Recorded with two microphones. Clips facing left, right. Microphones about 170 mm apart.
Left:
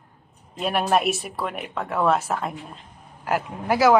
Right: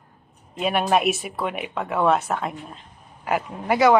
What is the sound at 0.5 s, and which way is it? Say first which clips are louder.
A woman's voice: right 1 dB; centre (ahead or behind).